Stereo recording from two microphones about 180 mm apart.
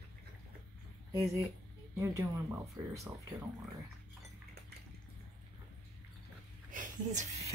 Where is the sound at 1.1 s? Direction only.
15° right (ahead or behind).